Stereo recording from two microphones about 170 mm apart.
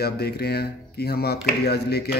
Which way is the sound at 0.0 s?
65° left (ahead or behind).